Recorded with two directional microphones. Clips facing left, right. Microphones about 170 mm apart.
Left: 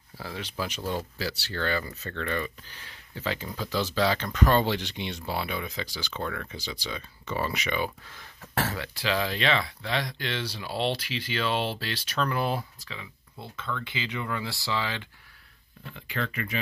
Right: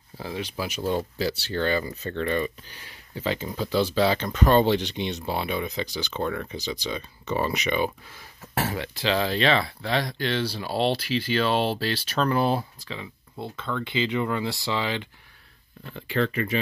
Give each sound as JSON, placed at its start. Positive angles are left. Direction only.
{"t": 0.2, "sound": "speech", "side_deg": -15}
{"t": 2.8, "sound": "a sound", "side_deg": -10}
{"t": 3.3, "sound": "speech", "side_deg": -20}
{"t": 8.1, "sound": "speech", "side_deg": -10}
{"t": 8.8, "sound": "speech", "side_deg": -25}
{"t": 15.9, "sound": "speech", "side_deg": -35}